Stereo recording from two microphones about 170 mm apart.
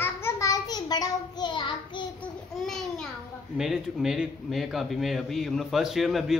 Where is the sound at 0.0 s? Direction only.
15° left (ahead or behind).